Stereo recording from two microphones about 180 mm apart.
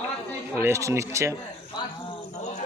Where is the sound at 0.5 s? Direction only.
15° right (ahead or behind).